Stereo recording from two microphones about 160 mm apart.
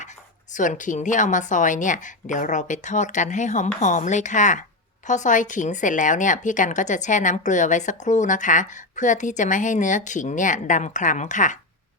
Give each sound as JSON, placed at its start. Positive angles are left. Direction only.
{"t": 0.5, "sound": "a woman's voice", "side_deg": 50}